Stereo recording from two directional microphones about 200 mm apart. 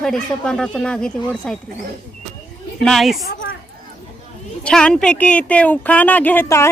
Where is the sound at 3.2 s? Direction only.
65° left (ahead or behind).